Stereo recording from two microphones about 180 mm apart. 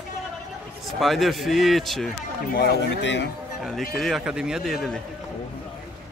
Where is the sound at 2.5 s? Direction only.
65° left (ahead or behind).